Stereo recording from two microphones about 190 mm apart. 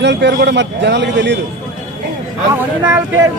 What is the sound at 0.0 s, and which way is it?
A man's voice, 65° right (ahead or behind).